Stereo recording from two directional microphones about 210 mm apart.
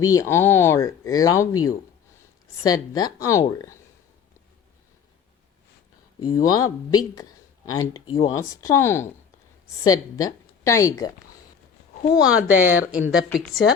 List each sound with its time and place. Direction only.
0.0 s speech: 15° left (ahead or behind)
6.1 s speech: 15° left (ahead or behind)
12.5 s a woman's voice: 10° right (ahead or behind)